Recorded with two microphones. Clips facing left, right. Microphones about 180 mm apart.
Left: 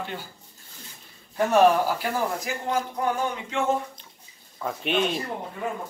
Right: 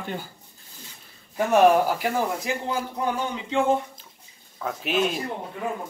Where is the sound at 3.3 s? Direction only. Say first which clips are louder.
Right 3 dB; 30° right (ahead or behind).